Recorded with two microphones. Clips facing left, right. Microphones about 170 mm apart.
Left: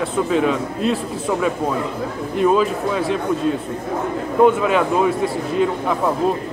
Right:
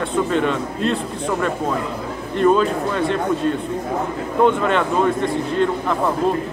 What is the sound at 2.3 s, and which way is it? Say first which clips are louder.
Speech: right 1 dB; 5° left (ahead or behind).